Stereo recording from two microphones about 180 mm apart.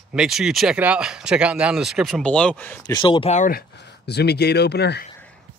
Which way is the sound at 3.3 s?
45° left (ahead or behind).